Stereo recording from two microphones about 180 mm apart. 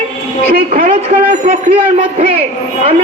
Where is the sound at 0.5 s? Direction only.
50° right (ahead or behind).